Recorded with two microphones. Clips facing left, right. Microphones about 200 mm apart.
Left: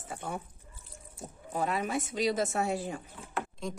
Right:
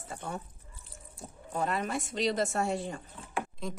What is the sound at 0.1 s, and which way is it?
Speech, 5° left (ahead or behind).